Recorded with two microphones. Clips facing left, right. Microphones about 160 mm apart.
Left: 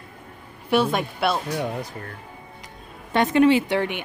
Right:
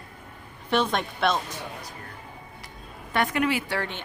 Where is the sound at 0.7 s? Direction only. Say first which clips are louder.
Left 4 dB; 10° left (ahead or behind).